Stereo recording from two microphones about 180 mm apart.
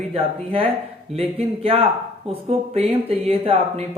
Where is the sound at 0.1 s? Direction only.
30° right (ahead or behind).